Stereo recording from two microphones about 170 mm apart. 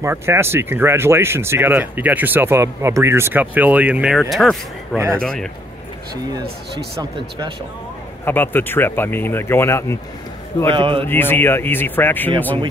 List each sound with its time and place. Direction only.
0.0 s a man's voice: 15° right (ahead or behind); by 5.5 s 5° left (ahead or behind)
7.0 s speech: 25° right (ahead or behind)
8.3 s speech: 10° left (ahead or behind)
10.7 s a man's voice: 30° right (ahead or behind)
11.0 s speech: 10° left (ahead or behind)